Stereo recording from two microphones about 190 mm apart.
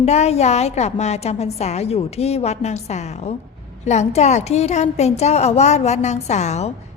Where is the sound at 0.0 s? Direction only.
35° left (ahead or behind).